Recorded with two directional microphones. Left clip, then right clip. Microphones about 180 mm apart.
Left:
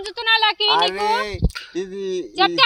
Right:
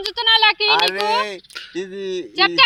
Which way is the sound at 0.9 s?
55° left (ahead or behind).